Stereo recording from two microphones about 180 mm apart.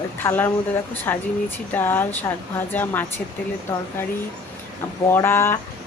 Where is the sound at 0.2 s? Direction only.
10° left (ahead or behind).